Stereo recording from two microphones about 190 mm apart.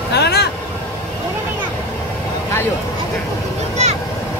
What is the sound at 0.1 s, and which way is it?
Vehicle, 60° left (ahead or behind).